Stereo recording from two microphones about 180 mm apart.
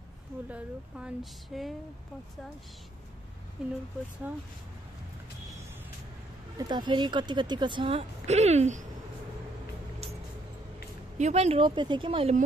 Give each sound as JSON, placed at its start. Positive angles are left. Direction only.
{"t": 0.5, "sound": "speech", "side_deg": -5}
{"t": 3.6, "sound": "speech", "side_deg": -5}
{"t": 6.7, "sound": "speech", "side_deg": -25}
{"t": 11.1, "sound": "speech", "side_deg": -40}